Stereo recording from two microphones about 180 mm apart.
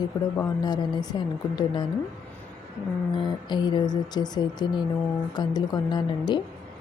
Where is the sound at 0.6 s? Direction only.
25° left (ahead or behind).